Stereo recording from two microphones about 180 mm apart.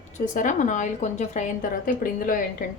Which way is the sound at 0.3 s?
45° left (ahead or behind).